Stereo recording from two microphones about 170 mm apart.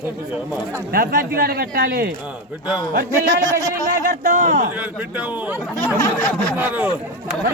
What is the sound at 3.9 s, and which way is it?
Speech, 50° right (ahead or behind).